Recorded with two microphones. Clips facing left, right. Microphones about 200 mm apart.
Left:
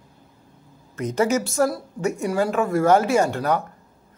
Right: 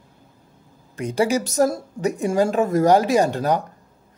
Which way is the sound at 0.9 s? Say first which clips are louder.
Right 1 dB; 15° right (ahead or behind).